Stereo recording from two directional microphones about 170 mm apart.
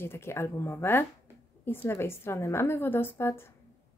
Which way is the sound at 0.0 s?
15° left (ahead or behind).